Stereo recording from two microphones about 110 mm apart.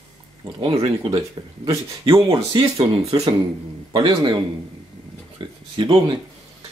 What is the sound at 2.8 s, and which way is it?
Speech, 70° right (ahead or behind).